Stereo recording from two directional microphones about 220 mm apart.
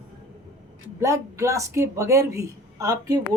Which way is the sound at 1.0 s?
15° right (ahead or behind).